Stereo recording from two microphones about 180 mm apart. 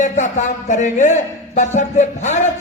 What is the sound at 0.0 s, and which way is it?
Speech, 40° left (ahead or behind).